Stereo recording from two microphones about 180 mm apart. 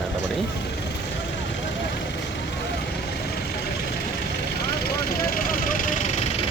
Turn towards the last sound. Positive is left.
turn(degrees=40)  # may be behind; listen again after turning